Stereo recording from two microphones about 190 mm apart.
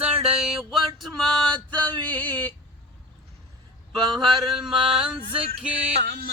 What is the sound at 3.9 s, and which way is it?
Mantra, centre (ahead or behind).